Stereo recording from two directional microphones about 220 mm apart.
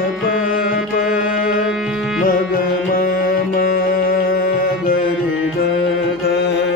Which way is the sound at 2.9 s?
40° left (ahead or behind).